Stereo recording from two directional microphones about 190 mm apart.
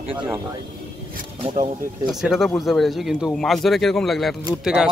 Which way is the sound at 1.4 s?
25° right (ahead or behind).